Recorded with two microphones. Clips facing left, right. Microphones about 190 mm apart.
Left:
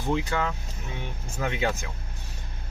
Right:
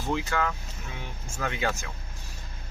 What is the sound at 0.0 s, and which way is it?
Speech, 20° left (ahead or behind).